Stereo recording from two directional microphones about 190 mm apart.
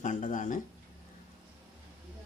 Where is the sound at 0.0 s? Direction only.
40° left (ahead or behind).